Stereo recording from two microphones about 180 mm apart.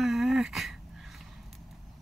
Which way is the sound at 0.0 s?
Centre (ahead or behind).